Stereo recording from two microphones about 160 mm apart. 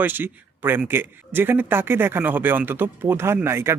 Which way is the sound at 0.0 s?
10° right (ahead or behind).